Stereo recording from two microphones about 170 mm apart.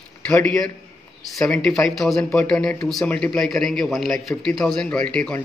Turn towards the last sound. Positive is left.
turn(degrees=5)  # may be behind; listen again after turning